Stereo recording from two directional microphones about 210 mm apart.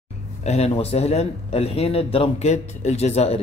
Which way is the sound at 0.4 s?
30° left (ahead or behind).